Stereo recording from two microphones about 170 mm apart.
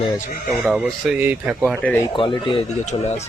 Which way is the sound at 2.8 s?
40° left (ahead or behind).